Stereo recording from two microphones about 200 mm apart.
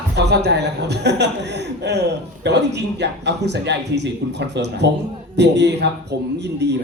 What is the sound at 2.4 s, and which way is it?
A woman's voice, 60° right (ahead or behind).